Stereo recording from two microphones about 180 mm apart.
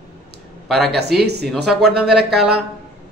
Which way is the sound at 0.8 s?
65° right (ahead or behind).